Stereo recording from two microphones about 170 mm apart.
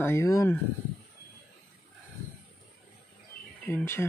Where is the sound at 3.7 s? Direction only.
15° left (ahead or behind).